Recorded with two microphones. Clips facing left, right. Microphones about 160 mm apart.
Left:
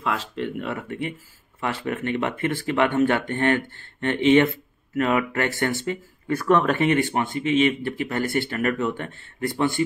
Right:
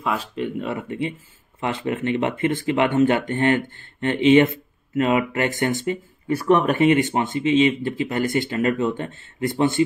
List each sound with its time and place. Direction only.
0.0 s speech: 10° right (ahead or behind)